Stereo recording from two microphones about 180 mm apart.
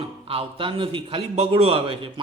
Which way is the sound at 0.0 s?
30° right (ahead or behind).